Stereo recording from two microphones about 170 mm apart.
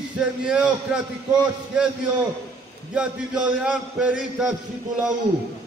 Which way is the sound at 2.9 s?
5° right (ahead or behind).